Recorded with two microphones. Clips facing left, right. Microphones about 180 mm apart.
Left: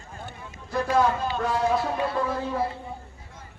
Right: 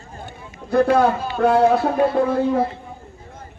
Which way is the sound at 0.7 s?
60° right (ahead or behind).